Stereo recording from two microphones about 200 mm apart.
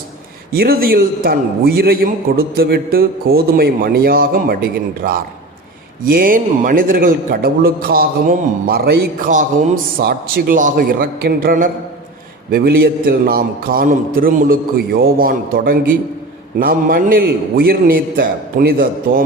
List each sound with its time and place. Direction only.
0.5 s a man's voice: 50° right (ahead or behind)